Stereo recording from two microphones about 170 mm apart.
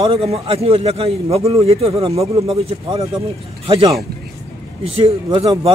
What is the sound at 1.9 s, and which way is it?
Speech, 20° right (ahead or behind).